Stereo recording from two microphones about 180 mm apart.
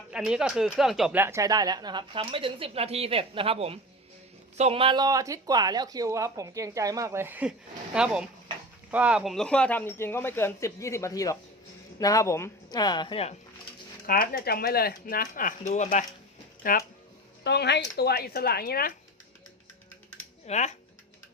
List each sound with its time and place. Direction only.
0.1 s speech: 5° right (ahead or behind); by 13.3 s 30° left (ahead or behind)
14.1 s speech: 60° left (ahead or behind)
17.4 s speech: 70° left (ahead or behind)
20.5 s speech: 40° left (ahead or behind)